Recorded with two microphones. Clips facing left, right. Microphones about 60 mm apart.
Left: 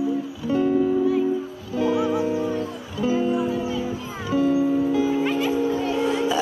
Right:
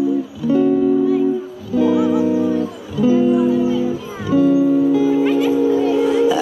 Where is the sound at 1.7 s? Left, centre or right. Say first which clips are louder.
Right 7 dB; left.